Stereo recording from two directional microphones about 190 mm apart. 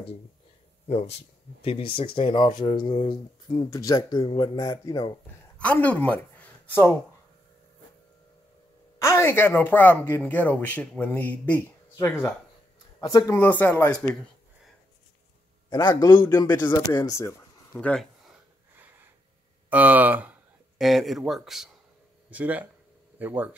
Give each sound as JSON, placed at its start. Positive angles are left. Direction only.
{"t": 0.8, "sound": "speech", "side_deg": 35}
{"t": 5.6, "sound": "speech", "side_deg": 10}
{"t": 9.0, "sound": "speech", "side_deg": 15}
{"t": 15.7, "sound": "speech", "side_deg": 20}
{"t": 19.7, "sound": "speech", "side_deg": -10}